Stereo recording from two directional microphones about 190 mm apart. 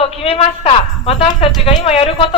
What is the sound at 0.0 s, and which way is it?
A woman's voice, 30° left (ahead or behind).